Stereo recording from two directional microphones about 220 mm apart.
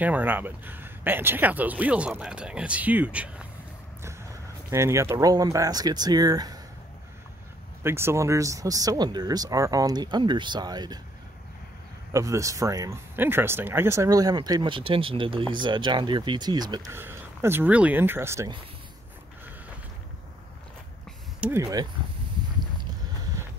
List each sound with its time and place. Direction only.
0.0 s speech: 5° right (ahead or behind)
7.8 s speech: 10° right (ahead or behind)
12.1 s speech: 15° right (ahead or behind)
21.4 s speech: 10° right (ahead or behind)